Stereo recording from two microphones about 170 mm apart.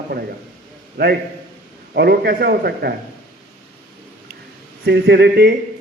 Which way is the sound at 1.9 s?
70° right (ahead or behind).